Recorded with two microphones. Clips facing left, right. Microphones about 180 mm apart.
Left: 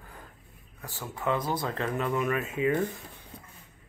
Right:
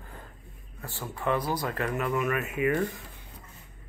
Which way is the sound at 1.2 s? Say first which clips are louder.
Right 1 dB; 25° left (ahead or behind).